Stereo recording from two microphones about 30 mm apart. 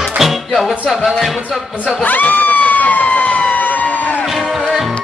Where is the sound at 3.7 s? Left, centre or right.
Left.